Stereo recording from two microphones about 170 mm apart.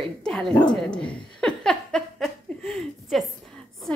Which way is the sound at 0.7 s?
5° left (ahead or behind).